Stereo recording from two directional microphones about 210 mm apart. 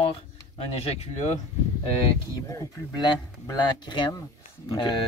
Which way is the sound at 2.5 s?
20° left (ahead or behind).